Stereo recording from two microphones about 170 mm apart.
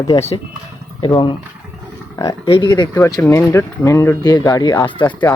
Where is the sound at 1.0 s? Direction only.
25° left (ahead or behind).